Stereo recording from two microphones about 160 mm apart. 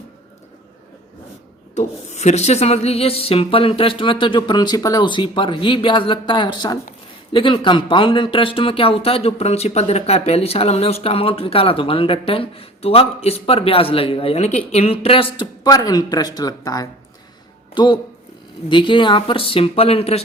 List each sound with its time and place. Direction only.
1.7 s speech: 45° left (ahead or behind)